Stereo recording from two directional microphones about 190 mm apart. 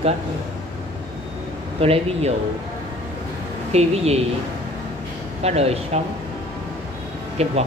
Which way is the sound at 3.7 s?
35° right (ahead or behind).